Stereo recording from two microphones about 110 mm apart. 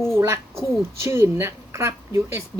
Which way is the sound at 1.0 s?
25° right (ahead or behind).